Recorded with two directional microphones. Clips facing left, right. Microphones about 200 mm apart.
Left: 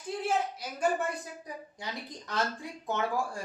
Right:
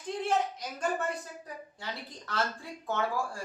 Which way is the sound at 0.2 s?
5° left (ahead or behind).